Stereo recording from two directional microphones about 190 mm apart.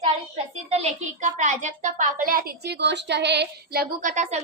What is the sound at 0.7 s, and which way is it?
A woman's voice, 35° right (ahead or behind).